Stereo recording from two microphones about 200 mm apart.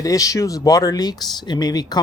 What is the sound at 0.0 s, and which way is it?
Speech, 15° left (ahead or behind).